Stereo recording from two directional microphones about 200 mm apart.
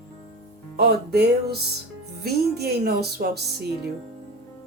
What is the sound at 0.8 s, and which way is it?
Music, 55° right (ahead or behind).